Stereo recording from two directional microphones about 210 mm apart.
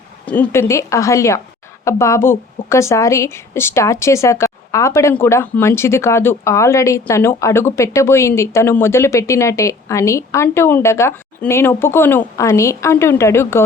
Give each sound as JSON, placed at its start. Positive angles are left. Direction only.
{"t": 0.3, "sound": "speech", "side_deg": 10}